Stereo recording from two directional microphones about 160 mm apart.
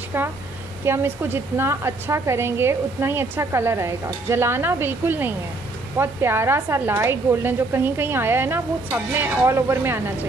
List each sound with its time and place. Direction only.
0.1 s a woman's voice: 15° right (ahead or behind)